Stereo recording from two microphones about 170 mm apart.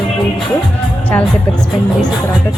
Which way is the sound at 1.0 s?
5° left (ahead or behind).